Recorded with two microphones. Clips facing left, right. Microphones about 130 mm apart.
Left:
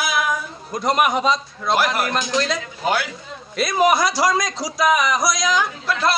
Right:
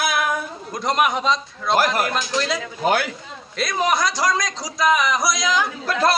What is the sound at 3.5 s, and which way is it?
A man's voice, 5° left (ahead or behind).